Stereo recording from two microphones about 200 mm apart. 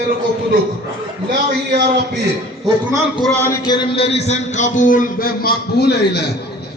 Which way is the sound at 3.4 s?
20° left (ahead or behind).